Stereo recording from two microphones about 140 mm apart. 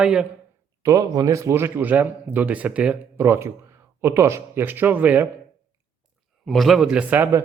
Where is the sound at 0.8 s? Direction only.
25° right (ahead or behind).